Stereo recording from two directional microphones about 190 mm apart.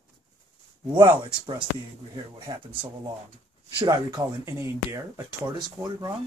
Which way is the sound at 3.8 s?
20° right (ahead or behind).